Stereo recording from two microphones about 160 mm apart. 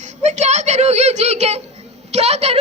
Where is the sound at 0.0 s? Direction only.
45° right (ahead or behind).